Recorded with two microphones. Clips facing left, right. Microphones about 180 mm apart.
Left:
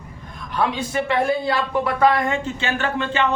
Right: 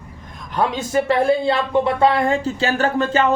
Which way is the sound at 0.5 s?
45° right (ahead or behind).